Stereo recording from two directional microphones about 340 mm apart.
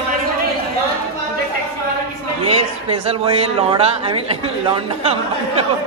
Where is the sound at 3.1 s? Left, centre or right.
Centre.